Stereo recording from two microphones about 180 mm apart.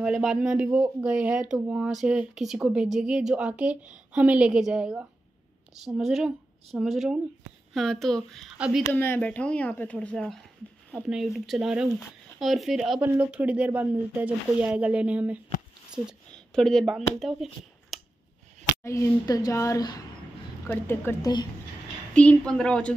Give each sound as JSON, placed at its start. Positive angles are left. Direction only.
{"t": 0.0, "sound": "speech", "side_deg": 0}
{"t": 8.9, "sound": "speech", "side_deg": 10}
{"t": 18.8, "sound": "speech", "side_deg": 15}
{"t": 22.1, "sound": "speech", "side_deg": 5}